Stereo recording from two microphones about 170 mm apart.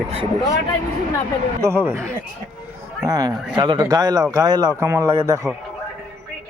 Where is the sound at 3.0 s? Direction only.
20° right (ahead or behind).